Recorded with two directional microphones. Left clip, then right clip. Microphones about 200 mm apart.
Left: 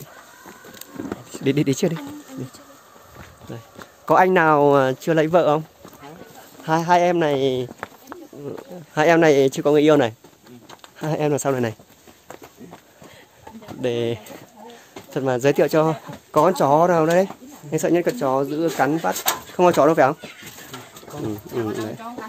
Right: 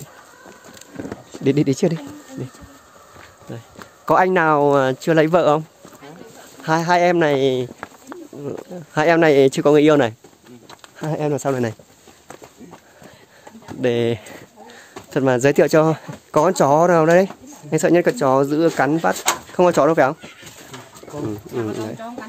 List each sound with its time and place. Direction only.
1.4 s speech: 15° right (ahead or behind)
3.4 s speech: 10° right (ahead or behind)
6.6 s speech: 20° right (ahead or behind)
8.5 s speech: 30° right (ahead or behind)
11.0 s speech: 5° right (ahead or behind)
13.7 s speech: 25° right (ahead or behind)